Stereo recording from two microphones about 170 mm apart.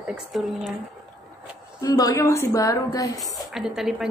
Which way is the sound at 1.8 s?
20° left (ahead or behind).